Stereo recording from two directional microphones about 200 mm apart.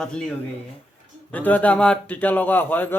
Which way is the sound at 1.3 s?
10° left (ahead or behind).